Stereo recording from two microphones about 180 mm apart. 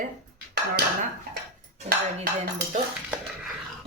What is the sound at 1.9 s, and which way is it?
Dishes, 60° right (ahead or behind).